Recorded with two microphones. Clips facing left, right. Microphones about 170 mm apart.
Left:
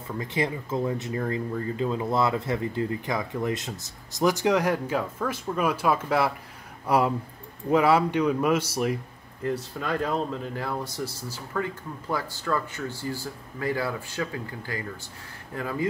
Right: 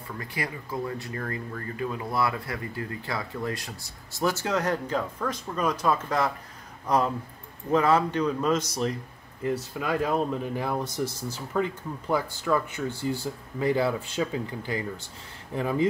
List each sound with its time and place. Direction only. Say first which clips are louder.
0.2 s a man's voice: left 7 dB; 20° left (ahead or behind)
9.4 s speech: even; 5° right (ahead or behind)